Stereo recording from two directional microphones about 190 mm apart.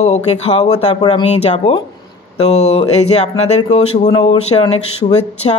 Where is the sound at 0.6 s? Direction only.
25° left (ahead or behind).